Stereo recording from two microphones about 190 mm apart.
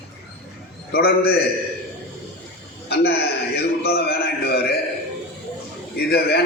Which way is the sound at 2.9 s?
55° left (ahead or behind).